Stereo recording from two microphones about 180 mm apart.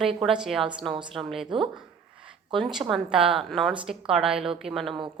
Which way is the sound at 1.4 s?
25° right (ahead or behind).